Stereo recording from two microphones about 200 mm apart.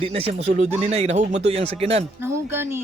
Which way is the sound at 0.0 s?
30° right (ahead or behind).